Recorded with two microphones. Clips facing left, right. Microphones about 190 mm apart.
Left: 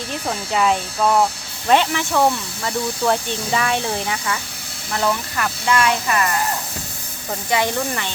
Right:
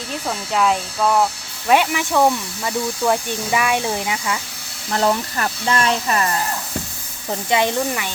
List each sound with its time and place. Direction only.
0.3 s speech: centre (ahead or behind)
1.7 s speech: 10° right (ahead or behind)
4.9 s speech: 35° right (ahead or behind)
7.5 s speech: 20° right (ahead or behind)